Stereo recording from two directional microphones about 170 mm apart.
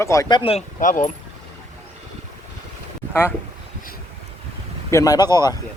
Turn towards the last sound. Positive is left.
turn(degrees=25)  # may be behind; listen again after turning